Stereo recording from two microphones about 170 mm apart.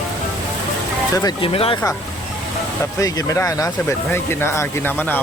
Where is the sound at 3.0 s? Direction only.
20° left (ahead or behind).